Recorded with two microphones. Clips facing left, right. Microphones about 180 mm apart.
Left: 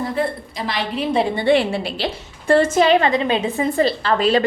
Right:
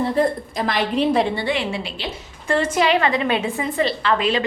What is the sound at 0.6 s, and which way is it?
Speech, 50° right (ahead or behind).